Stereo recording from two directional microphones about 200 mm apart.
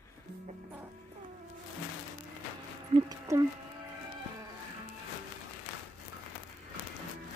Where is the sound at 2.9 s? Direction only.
20° right (ahead or behind).